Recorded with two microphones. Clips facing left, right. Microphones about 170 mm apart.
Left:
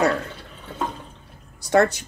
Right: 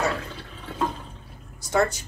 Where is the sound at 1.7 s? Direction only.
70° left (ahead or behind).